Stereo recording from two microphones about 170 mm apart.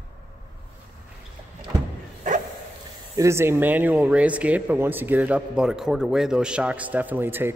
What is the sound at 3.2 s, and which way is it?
Speech, 15° right (ahead or behind).